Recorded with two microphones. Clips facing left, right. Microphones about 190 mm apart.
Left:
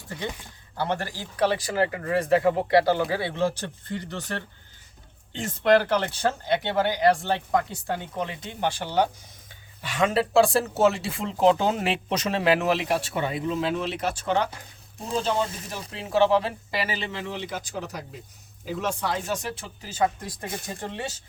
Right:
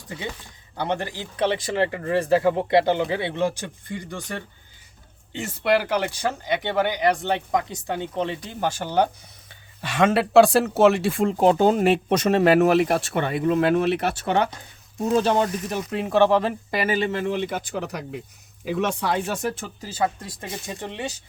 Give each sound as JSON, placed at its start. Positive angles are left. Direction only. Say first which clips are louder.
{"t": 0.8, "sound": "speech", "louder": "right 2 dB", "side_deg": -20}
{"t": 8.4, "sound": "speech", "louder": "right 2 dB", "side_deg": -45}
{"t": 9.9, "sound": "speech", "louder": "right 5 dB", "side_deg": -70}
{"t": 19.8, "sound": "speech", "louder": "even", "side_deg": -35}
{"t": 20.9, "sound": "speech", "louder": "right 4 dB", "side_deg": -15}